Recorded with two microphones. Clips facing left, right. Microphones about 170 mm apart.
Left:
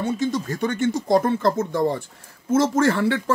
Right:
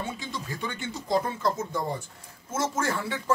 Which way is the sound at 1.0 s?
70° left (ahead or behind).